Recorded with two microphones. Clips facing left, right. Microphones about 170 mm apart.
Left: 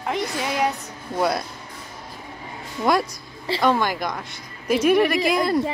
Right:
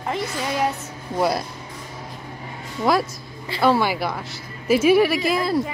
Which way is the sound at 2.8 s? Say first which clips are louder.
Right 1 dB; centre (ahead or behind).